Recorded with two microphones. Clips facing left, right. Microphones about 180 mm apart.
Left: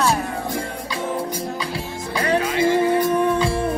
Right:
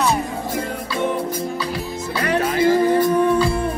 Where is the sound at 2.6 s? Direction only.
25° left (ahead or behind).